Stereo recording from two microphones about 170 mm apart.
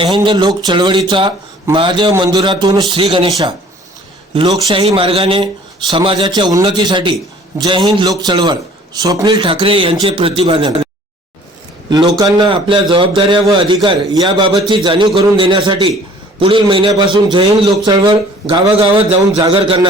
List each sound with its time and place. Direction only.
0.0 s a man's voice: 30° right (ahead or behind)
4.4 s a man's voice: 25° right (ahead or behind)
11.9 s a man's voice: 25° right (ahead or behind)